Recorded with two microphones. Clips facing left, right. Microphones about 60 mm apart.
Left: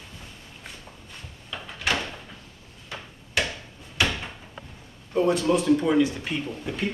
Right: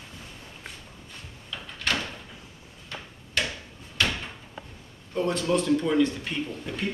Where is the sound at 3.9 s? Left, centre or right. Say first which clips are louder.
Left 2 dB; centre.